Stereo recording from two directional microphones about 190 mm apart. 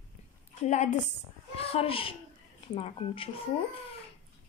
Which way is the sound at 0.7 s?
40° left (ahead or behind).